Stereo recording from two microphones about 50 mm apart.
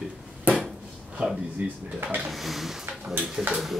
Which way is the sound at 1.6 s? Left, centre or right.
Right.